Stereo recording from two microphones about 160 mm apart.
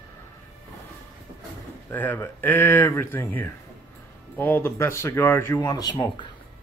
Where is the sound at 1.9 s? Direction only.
15° left (ahead or behind).